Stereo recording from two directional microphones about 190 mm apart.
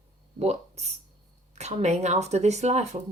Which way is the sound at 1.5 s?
35° right (ahead or behind).